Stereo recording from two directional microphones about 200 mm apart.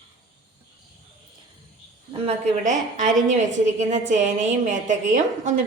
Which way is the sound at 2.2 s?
40° right (ahead or behind).